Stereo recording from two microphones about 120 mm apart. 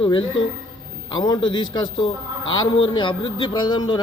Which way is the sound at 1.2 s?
40° left (ahead or behind).